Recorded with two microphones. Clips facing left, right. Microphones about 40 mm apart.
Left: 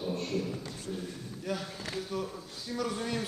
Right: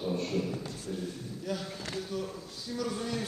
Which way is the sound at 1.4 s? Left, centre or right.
Centre.